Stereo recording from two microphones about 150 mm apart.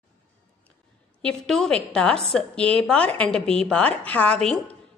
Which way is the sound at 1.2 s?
5° left (ahead or behind).